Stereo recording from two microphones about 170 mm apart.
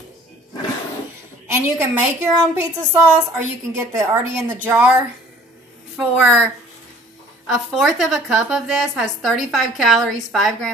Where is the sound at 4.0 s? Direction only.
15° right (ahead or behind).